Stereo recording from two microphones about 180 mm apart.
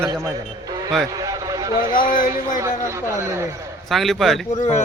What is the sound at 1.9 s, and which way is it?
Speech, 50° left (ahead or behind).